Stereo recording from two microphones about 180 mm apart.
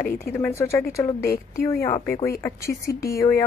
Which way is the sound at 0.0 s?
50° left (ahead or behind).